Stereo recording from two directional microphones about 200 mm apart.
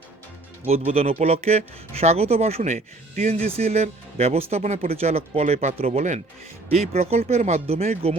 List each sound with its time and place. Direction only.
0.9 s speech: 30° right (ahead or behind)